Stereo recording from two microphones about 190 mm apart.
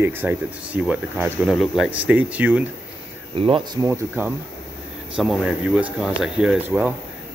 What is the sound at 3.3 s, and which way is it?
Speech, 30° right (ahead or behind).